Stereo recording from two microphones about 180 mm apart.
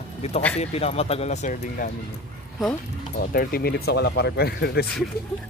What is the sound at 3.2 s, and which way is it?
Speech, 55° left (ahead or behind).